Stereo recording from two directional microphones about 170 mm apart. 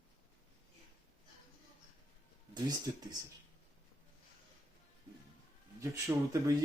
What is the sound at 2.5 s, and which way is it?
Speech, 25° right (ahead or behind).